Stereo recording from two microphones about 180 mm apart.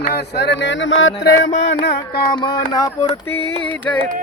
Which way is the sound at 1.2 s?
60° left (ahead or behind).